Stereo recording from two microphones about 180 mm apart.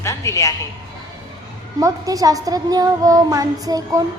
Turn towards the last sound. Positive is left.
turn(degrees=-20)  # may be behind; listen again after turning